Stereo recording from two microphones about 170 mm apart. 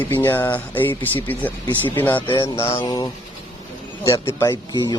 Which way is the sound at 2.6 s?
15° left (ahead or behind).